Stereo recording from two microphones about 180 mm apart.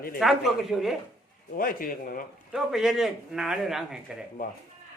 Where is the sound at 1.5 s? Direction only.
50° left (ahead or behind).